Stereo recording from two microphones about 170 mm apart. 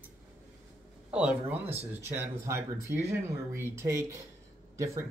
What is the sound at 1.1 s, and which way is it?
Speech, 5° right (ahead or behind).